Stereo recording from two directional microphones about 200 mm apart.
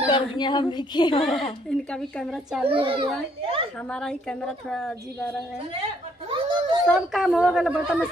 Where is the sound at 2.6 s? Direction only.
25° right (ahead or behind).